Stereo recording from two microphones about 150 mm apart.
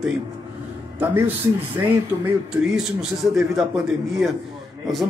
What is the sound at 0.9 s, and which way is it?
A man's voice, 15° right (ahead or behind).